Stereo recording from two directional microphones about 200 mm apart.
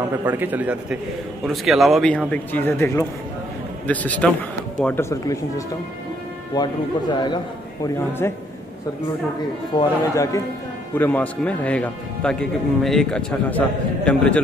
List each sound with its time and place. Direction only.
0.2 s a man's voice: 10° right (ahead or behind); by 5.4 s 15° left (ahead or behind)
6.5 s speech: 20° left (ahead or behind)
7.8 s speech: 10° left (ahead or behind)
9.8 s speech: 15° left (ahead or behind)